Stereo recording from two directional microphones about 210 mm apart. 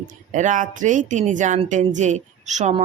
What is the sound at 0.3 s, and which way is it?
A woman's voice, 35° right (ahead or behind).